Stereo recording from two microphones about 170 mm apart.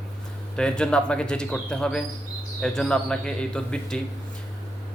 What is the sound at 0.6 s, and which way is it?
Speech, 5° left (ahead or behind).